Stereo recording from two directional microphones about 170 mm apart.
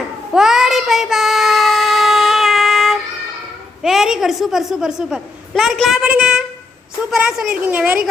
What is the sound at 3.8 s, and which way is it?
A child's voice, centre (ahead or behind).